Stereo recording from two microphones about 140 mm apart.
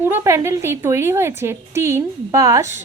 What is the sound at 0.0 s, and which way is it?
A woman's voice, 15° right (ahead or behind).